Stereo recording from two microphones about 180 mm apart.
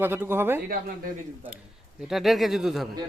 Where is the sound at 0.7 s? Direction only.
55° right (ahead or behind).